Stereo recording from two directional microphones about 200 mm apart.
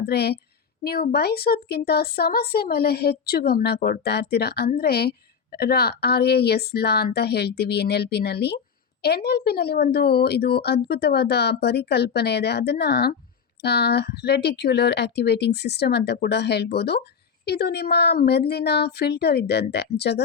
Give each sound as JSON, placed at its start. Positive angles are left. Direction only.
{"t": 0.0, "sound": "a woman's voice", "side_deg": 55}